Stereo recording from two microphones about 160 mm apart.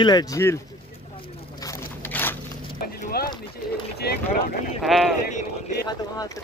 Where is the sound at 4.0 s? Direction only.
75° left (ahead or behind).